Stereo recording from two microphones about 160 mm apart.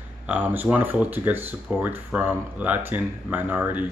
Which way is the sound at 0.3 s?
10° right (ahead or behind).